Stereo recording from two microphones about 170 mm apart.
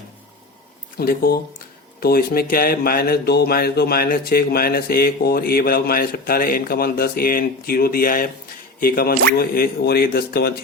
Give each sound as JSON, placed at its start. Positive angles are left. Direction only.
{"t": 0.9, "sound": "speech", "side_deg": 60}